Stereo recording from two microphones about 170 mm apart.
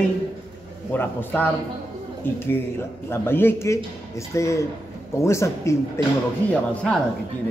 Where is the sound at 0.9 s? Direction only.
10° left (ahead or behind).